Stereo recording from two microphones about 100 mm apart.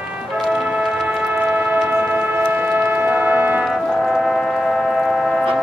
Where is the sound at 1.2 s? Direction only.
15° right (ahead or behind).